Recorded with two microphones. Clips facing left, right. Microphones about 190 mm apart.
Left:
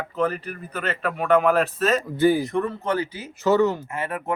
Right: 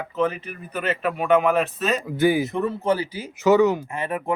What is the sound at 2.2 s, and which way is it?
Speech, 15° right (ahead or behind).